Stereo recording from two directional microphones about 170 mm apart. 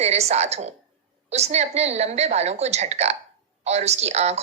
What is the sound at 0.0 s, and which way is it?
A woman's voice, 40° right (ahead or behind).